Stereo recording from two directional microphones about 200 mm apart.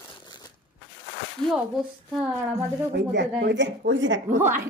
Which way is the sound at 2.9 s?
60° right (ahead or behind).